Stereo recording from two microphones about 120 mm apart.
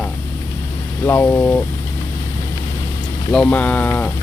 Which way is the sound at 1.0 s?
15° left (ahead or behind).